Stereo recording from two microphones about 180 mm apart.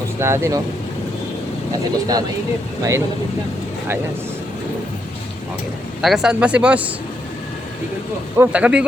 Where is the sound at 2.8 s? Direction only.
15° right (ahead or behind).